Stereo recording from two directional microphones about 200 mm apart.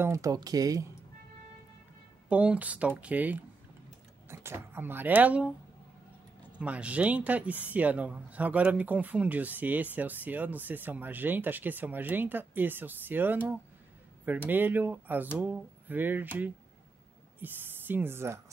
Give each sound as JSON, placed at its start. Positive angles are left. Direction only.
{"t": 0.0, "sound": "speech", "side_deg": -15}
{"t": 2.2, "sound": "speech", "side_deg": -5}
{"t": 6.6, "sound": "speech", "side_deg": -5}